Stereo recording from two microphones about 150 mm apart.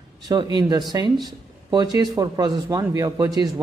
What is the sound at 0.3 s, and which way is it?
Speech, 30° right (ahead or behind).